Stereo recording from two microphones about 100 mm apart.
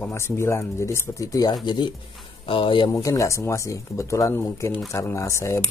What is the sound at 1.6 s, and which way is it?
Speech, 45° left (ahead or behind).